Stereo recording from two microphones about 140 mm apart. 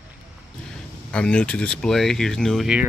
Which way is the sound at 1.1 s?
5° left (ahead or behind).